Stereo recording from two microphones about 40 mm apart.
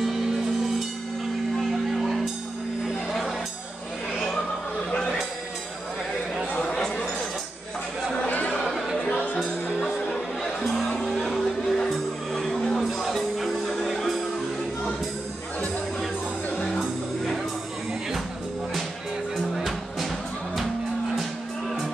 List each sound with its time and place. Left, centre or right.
1.7 s music: centre
6.6 s a sound: centre
9.1 s music: left
10.6 s music: centre
11.4 s music: centre
19.3 s music: centre